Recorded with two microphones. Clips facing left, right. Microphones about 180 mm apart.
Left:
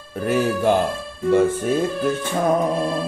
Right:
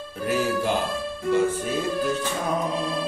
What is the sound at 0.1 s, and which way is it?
Music, 55° left (ahead or behind).